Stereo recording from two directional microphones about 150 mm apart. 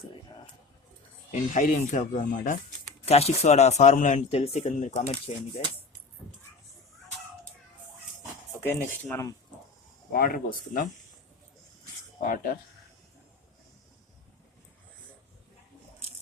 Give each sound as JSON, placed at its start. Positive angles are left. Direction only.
{"t": 1.3, "sound": "speech", "side_deg": 55}
{"t": 3.1, "sound": "speech", "side_deg": 45}
{"t": 8.6, "sound": "speech", "side_deg": 15}
{"t": 10.1, "sound": "speech", "side_deg": 75}